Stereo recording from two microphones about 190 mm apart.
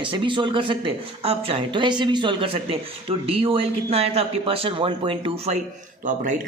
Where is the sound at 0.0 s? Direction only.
25° right (ahead or behind).